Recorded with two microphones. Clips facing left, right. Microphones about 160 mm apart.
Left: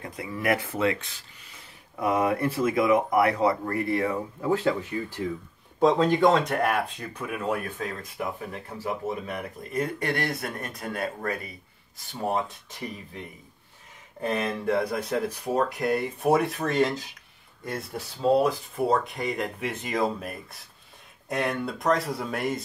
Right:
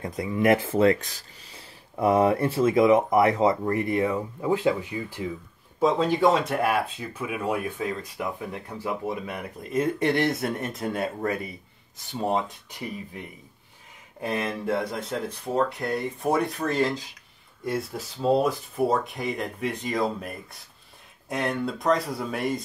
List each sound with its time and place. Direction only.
0.0 s speech: 20° right (ahead or behind)
9.6 s speech: 20° right (ahead or behind)
14.2 s speech: 5° right (ahead or behind)
15.4 s speech: 10° left (ahead or behind)